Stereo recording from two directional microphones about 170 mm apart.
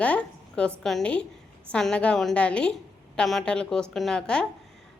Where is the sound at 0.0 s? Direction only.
5° left (ahead or behind).